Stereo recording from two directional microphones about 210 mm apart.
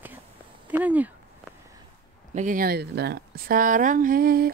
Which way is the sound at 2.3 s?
35° right (ahead or behind).